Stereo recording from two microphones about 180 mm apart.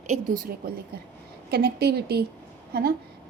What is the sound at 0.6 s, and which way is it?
A woman's voice, 60° right (ahead or behind).